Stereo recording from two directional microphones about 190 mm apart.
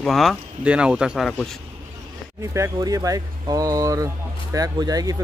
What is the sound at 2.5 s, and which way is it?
Speech, 15° right (ahead or behind).